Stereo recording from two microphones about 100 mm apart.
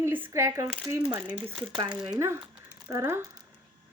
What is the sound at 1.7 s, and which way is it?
Speech, 50° right (ahead or behind).